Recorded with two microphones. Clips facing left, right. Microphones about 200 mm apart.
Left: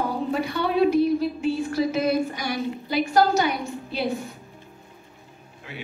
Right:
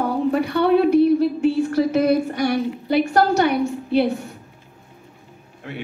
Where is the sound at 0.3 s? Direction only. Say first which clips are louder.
Right 10 dB; 60° right (ahead or behind).